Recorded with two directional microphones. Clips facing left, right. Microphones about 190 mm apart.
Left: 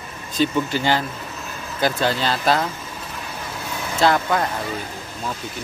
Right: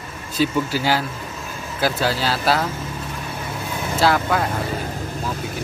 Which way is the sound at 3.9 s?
5° right (ahead or behind).